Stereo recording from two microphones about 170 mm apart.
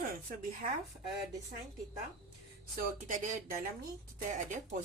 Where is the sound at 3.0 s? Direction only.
50° right (ahead or behind).